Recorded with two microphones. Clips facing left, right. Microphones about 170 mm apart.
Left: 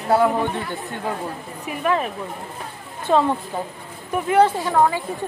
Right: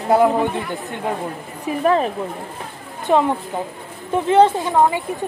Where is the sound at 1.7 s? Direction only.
35° right (ahead or behind).